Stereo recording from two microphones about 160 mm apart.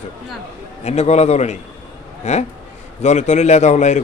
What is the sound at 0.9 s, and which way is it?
A man's voice, 45° left (ahead or behind).